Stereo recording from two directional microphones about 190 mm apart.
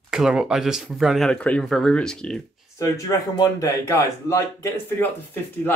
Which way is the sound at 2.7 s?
15° left (ahead or behind).